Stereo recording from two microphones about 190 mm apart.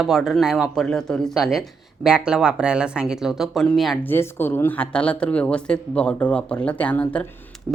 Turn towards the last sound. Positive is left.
turn(degrees=5)  # may be behind; listen again after turning